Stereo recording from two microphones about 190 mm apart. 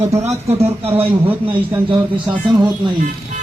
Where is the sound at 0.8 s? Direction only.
10° right (ahead or behind).